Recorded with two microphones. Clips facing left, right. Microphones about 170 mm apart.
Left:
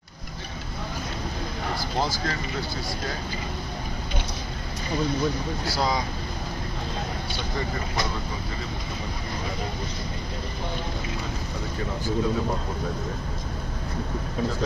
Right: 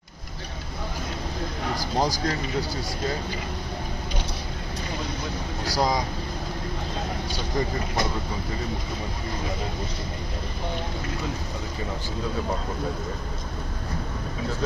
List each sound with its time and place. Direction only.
2.0 s speech: 40° right (ahead or behind)
5.6 s speech: 15° right (ahead or behind)